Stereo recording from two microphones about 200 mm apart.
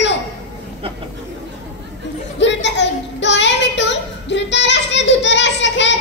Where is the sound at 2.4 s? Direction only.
60° left (ahead or behind).